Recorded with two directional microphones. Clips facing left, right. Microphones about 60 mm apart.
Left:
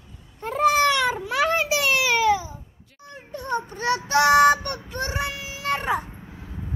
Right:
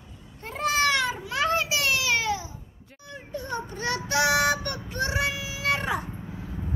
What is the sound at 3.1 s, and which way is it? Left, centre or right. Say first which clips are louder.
Child singing: left 5 dB; left.